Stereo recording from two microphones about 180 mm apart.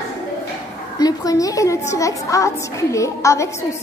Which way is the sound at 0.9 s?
20° left (ahead or behind).